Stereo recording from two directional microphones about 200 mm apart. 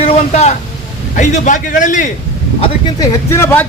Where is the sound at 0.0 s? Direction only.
30° left (ahead or behind).